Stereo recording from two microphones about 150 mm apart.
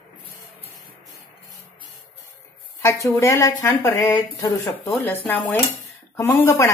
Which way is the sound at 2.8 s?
20° left (ahead or behind).